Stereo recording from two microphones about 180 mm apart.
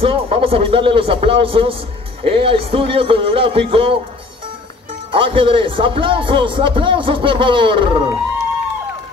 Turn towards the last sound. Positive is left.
turn(degrees=-30)  # may be behind; listen again after turning